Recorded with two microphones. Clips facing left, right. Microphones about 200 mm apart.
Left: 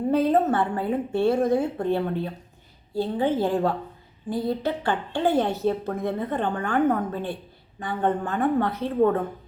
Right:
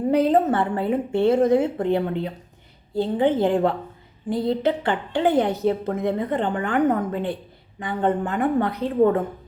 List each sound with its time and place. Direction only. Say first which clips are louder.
0.1 s a woman's voice: right 2 dB; 15° right (ahead or behind)